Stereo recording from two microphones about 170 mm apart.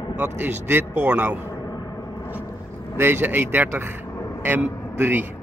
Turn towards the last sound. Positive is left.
turn(degrees=-10)  # may be behind; listen again after turning